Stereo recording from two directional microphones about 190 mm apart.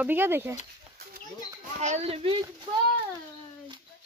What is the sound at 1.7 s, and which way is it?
Speech, 35° right (ahead or behind).